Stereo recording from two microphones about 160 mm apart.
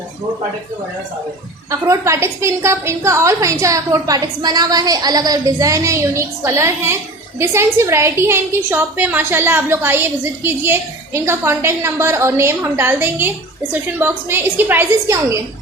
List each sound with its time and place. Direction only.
1.7 s a woman's voice: 20° right (ahead or behind)